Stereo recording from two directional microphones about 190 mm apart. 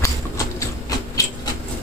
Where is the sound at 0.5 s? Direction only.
20° left (ahead or behind).